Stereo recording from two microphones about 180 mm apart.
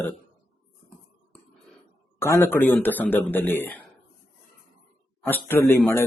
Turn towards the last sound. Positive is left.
turn(degrees=10)  # may be behind; listen again after turning